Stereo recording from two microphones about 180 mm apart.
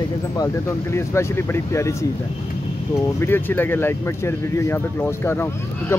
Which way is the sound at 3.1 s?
10° left (ahead or behind).